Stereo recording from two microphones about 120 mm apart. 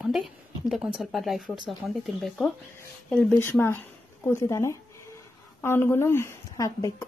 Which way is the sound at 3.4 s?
20° left (ahead or behind).